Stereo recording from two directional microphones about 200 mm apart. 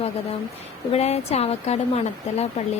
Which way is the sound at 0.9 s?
30° left (ahead or behind).